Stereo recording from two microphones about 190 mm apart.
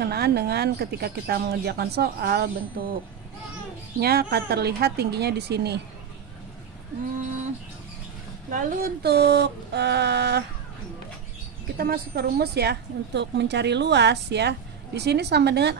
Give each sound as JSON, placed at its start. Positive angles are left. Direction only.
{"t": 0.0, "sound": "speech", "side_deg": -55}
{"t": 4.0, "sound": "speech", "side_deg": -55}
{"t": 8.5, "sound": "speech", "side_deg": -45}
{"t": 11.7, "sound": "speech", "side_deg": -50}